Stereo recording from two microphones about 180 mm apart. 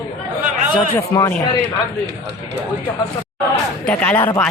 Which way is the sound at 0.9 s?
20° left (ahead or behind).